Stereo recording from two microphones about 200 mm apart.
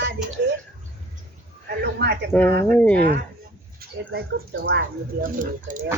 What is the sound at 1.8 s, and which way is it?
Speech, 55° right (ahead or behind).